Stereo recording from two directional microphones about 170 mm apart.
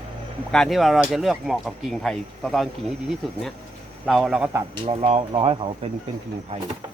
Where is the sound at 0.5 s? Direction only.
Centre (ahead or behind).